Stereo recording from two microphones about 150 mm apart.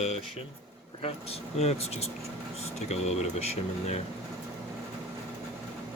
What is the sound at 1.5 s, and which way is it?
Speech, 45° left (ahead or behind).